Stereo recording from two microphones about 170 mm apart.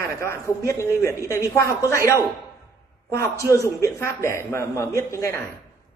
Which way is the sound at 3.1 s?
15° left (ahead or behind).